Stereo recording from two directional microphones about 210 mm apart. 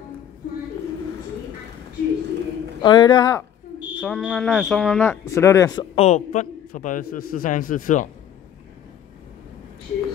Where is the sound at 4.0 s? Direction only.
Centre (ahead or behind); by 5.8 s 15° left (ahead or behind).